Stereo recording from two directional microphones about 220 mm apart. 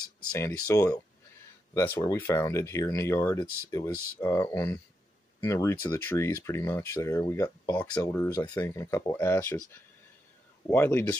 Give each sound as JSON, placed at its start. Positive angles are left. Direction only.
{"t": 0.7, "sound": "speech", "side_deg": 15}
{"t": 10.7, "sound": "speech", "side_deg": 10}